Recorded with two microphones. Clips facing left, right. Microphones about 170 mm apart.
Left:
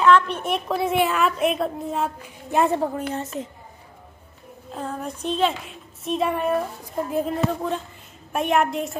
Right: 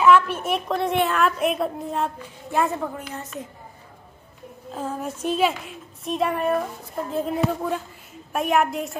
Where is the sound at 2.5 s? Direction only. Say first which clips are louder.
Left 3 dB; 25° left (ahead or behind).